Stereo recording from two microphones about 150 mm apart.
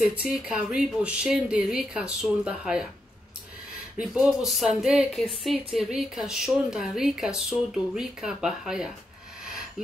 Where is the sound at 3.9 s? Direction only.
Centre (ahead or behind).